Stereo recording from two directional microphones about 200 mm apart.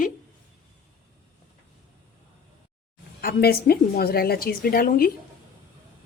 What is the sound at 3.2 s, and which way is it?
A woman's voice, 50° left (ahead or behind).